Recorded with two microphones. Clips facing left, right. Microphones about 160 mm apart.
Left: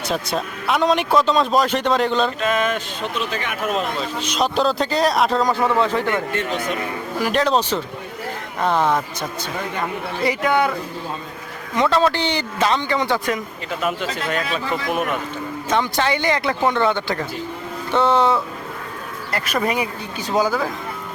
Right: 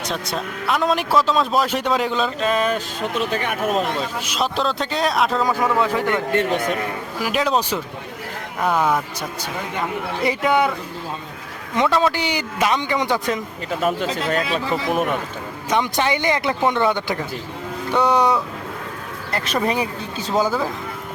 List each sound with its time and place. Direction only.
0.1 s a man's voice: centre (ahead or behind)
2.4 s speech: 35° right (ahead or behind)
3.2 s speech: 45° right (ahead or behind)
4.2 s a man's voice: 5° right (ahead or behind)
6.3 s speech: 55° right (ahead or behind)
7.2 s a man's voice: 5° right (ahead or behind)
8.6 s a man's voice: 5° right (ahead or behind)
10.4 s a man's voice: 5° right (ahead or behind)
12.0 s speech: 10° right (ahead or behind)
13.8 s speech: 40° right (ahead or behind)
14.5 s a man's voice: centre (ahead or behind)
15.7 s speech: 15° right (ahead or behind)
19.6 s speech: 30° right (ahead or behind)
20.1 s speech: 10° left (ahead or behind)